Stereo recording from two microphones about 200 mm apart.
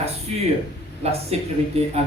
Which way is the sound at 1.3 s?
30° right (ahead or behind).